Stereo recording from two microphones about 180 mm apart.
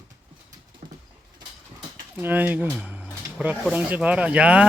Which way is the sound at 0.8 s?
50° right (ahead or behind).